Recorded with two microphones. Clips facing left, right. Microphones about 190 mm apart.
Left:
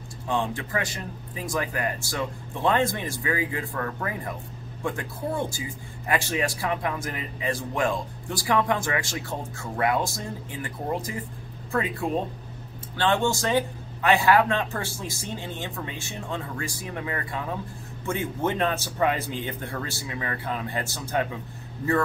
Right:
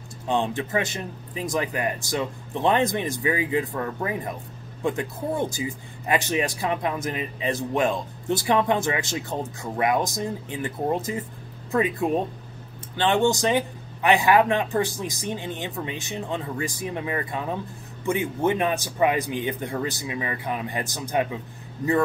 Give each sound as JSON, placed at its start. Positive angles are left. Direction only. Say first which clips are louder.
{"t": 0.3, "sound": "speech", "louder": "right 3 dB", "side_deg": -20}